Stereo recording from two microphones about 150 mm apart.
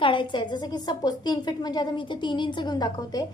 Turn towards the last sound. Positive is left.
turn(degrees=25)  # may be behind; listen again after turning